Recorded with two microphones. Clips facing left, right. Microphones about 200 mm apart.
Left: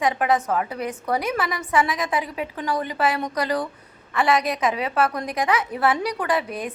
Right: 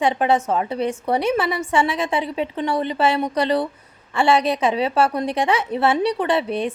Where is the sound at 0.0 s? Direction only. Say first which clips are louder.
Right 3 dB; 30° right (ahead or behind).